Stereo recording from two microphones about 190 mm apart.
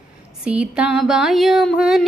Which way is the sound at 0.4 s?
5° right (ahead or behind).